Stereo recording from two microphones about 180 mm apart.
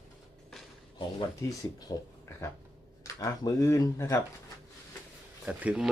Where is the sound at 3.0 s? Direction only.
15° left (ahead or behind).